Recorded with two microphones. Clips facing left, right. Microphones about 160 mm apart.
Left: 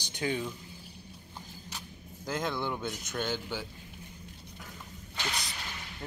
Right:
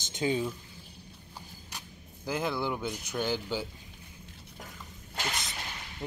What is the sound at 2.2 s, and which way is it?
Speech, 10° right (ahead or behind).